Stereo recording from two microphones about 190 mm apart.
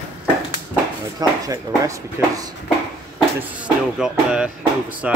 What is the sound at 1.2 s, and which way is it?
Speech, 20° right (ahead or behind).